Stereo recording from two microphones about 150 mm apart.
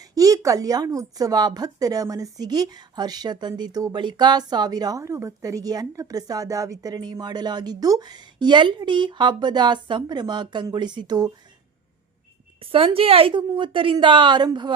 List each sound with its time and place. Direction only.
0.1 s speech: 25° right (ahead or behind)
12.7 s a woman's voice: 40° right (ahead or behind)